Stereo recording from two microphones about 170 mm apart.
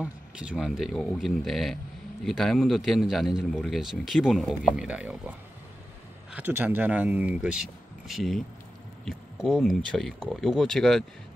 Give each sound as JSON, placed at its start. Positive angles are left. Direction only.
{"t": 0.0, "sound": "speech", "side_deg": -5}
{"t": 6.3, "sound": "speech", "side_deg": -10}